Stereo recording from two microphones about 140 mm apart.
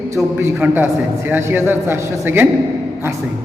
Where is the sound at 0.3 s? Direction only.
15° right (ahead or behind).